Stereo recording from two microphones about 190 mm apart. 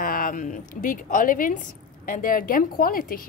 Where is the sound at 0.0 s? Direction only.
50° left (ahead or behind).